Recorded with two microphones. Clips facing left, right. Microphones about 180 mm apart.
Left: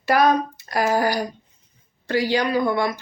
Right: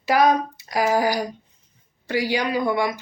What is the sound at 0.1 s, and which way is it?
Speech, 15° right (ahead or behind).